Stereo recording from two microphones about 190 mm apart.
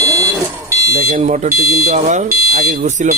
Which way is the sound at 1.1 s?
35° right (ahead or behind).